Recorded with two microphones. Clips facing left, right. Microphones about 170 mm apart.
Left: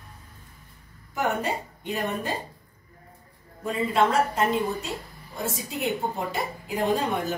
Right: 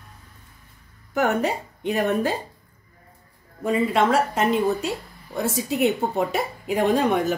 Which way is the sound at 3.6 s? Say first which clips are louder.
Right 3 dB; 85° right.